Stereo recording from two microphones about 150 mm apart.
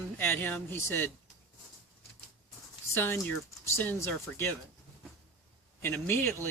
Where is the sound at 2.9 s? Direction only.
15° left (ahead or behind).